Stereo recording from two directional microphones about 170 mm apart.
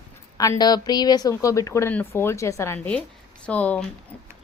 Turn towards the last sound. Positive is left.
turn(degrees=10)  # may be behind; listen again after turning